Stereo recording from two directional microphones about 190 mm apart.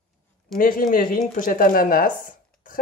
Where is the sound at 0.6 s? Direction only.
45° left (ahead or behind).